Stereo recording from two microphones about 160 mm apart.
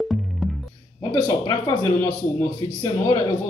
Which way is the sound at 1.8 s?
15° left (ahead or behind).